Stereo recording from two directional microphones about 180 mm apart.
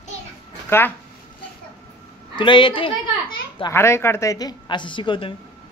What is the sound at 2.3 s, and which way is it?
Speech, 25° left (ahead or behind).